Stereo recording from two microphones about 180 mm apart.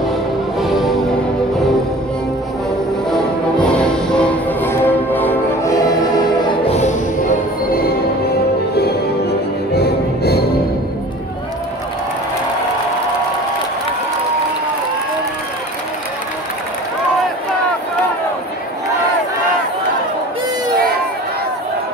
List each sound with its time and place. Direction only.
0.6 s music: centre (ahead or behind)
3.7 s music: 5° left (ahead or behind)
9.8 s music: 60° left (ahead or behind)